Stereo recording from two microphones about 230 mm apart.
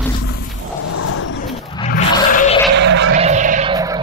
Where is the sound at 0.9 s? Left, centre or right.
Left.